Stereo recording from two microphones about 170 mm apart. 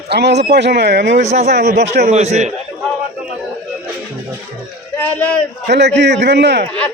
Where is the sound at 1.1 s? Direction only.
40° right (ahead or behind).